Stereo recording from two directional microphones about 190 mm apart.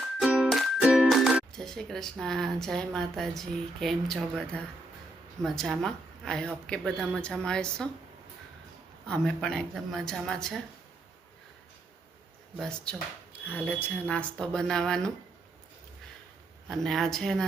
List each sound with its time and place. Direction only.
0.2 s speech: 5° right (ahead or behind)
9.0 s speech: 5° left (ahead or behind)
12.5 s speech: 5° left (ahead or behind)
16.6 s speech: centre (ahead or behind)